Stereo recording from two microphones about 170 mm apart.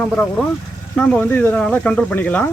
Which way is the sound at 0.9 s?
5° left (ahead or behind).